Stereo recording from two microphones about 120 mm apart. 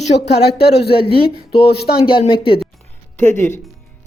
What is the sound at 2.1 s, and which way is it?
Speech, 50° left (ahead or behind).